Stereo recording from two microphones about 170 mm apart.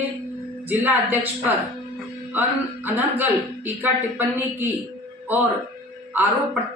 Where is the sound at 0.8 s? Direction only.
10° right (ahead or behind).